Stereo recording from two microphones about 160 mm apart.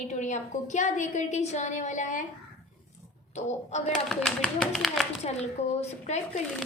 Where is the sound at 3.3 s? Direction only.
45° left (ahead or behind).